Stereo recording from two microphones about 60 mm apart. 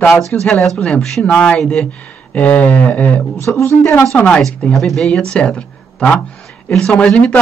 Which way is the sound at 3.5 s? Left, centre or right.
Left.